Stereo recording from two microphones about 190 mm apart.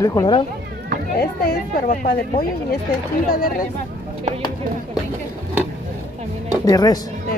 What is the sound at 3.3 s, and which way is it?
Speech, 50° left (ahead or behind).